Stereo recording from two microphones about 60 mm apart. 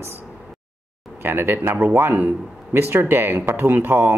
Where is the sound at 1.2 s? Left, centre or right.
Right.